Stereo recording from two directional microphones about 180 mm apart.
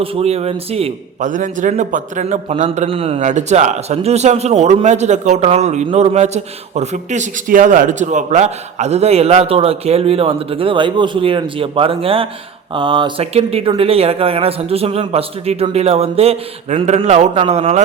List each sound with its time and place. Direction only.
0.0 s a man's voice: 35° right (ahead or behind)
1.3 s a man's voice: 45° right (ahead or behind)